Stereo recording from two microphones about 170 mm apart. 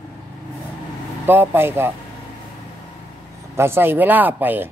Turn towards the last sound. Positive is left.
turn(degrees=-10)  # may be behind; listen again after turning